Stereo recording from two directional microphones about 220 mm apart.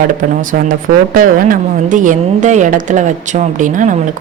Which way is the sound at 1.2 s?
40° right (ahead or behind).